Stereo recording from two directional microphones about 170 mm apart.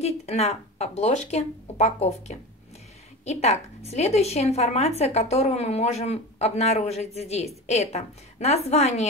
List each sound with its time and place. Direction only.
0.0 s a woman's voice: 40° left (ahead or behind)